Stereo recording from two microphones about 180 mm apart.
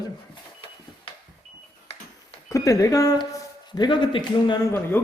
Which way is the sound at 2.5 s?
20° left (ahead or behind).